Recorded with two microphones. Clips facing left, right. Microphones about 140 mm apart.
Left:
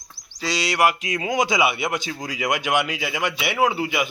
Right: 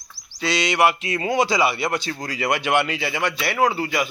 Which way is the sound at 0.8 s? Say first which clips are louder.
Even; 5° left (ahead or behind).